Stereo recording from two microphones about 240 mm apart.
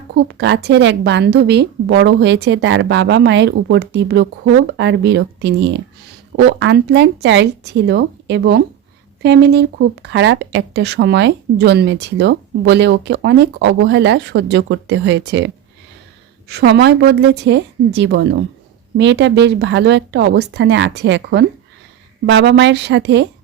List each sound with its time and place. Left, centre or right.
0.1 s speech: right